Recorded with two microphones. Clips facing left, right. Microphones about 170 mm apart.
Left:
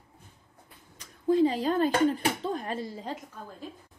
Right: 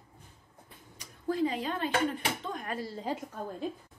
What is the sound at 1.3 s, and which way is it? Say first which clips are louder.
Speech: left 7 dB; 30° left (ahead or behind).